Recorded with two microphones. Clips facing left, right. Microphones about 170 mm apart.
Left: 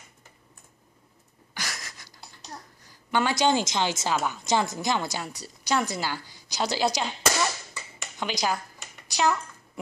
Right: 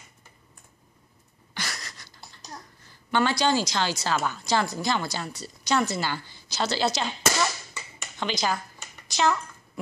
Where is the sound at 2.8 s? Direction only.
15° left (ahead or behind).